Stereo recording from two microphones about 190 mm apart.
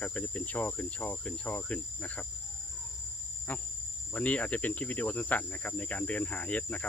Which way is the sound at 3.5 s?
10° left (ahead or behind).